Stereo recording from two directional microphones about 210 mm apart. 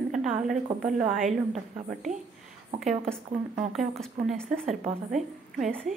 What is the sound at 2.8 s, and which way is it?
A woman's voice, 5° left (ahead or behind).